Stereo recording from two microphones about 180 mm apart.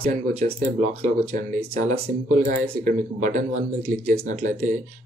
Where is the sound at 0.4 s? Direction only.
40° right (ahead or behind).